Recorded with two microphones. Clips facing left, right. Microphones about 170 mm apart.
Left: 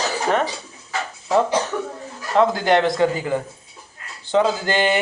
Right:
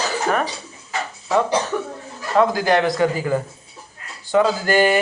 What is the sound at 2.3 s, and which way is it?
A man's voice, 25° left (ahead or behind).